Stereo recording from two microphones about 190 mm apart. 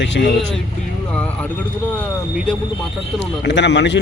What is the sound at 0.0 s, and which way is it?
Speech, 65° left (ahead or behind).